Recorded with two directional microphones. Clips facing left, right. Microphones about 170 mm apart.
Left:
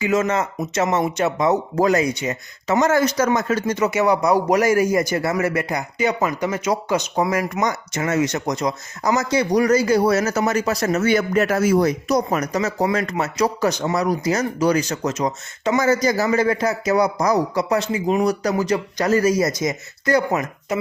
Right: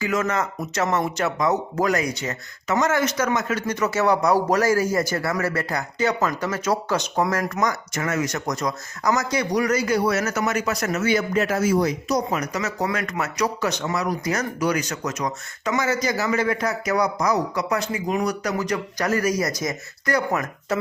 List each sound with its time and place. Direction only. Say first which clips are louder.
0.0 s a man's voice: left 4 dB; 25° left (ahead or behind)
3.9 s speech: left 1 dB; 10° left (ahead or behind)
7.6 s a man's voice: left 2 dB; 25° left (ahead or behind)
11.0 s speech: left 2 dB; 55° left (ahead or behind)
12.5 s a man's voice: left 5 dB; 30° left (ahead or behind)
15.8 s a man's voice: left 6 dB; 40° left (ahead or behind); by 20.4 s 25° left (ahead or behind)